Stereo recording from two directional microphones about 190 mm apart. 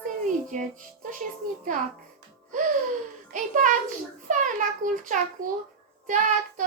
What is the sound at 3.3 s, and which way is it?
Speech, 45° right (ahead or behind).